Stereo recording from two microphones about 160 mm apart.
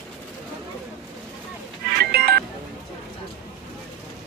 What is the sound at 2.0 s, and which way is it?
Telephone dialing, 80° right.